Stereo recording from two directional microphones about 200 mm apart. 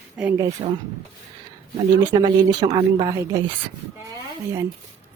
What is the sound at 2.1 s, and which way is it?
Speech, 20° right (ahead or behind).